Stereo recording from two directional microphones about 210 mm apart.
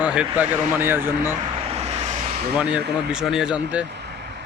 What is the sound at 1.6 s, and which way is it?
Vehicle, 30° right (ahead or behind).